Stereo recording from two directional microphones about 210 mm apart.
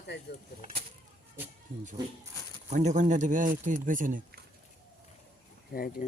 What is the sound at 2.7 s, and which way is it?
Speech, 35° right (ahead or behind).